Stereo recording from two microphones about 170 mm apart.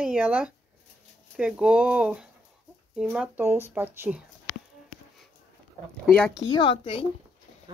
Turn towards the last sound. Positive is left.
turn(degrees=30)  # may be behind; listen again after turning